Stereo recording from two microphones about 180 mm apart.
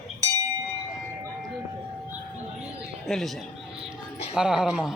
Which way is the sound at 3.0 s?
Centre (ahead or behind).